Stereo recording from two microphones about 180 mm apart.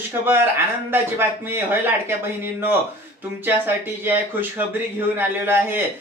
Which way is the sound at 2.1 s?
10° right (ahead or behind).